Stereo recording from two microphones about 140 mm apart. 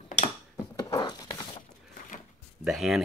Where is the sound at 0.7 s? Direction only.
30° left (ahead or behind).